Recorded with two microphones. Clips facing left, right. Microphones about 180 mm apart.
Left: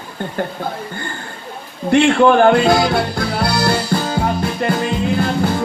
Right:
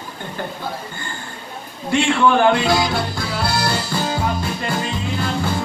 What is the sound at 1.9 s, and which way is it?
Speech, 50° left (ahead or behind).